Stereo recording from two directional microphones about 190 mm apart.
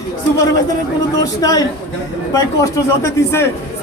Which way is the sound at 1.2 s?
20° left (ahead or behind).